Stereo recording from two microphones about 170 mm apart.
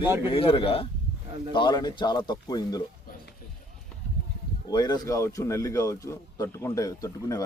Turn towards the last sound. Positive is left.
turn(degrees=20)  # may be behind; listen again after turning